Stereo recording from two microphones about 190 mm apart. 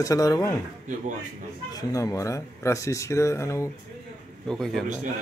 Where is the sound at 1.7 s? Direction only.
15° left (ahead or behind).